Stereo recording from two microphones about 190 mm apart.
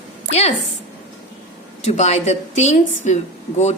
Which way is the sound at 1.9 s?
35° left (ahead or behind).